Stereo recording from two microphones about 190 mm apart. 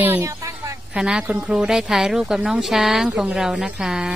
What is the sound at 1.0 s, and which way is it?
A woman's voice, 5° right (ahead or behind).